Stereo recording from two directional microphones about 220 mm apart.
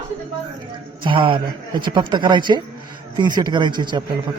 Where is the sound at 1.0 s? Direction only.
25° right (ahead or behind).